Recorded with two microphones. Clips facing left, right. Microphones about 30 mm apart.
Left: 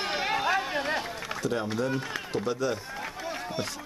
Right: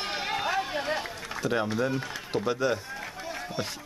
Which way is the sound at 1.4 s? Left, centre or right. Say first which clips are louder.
Right 2 dB; centre.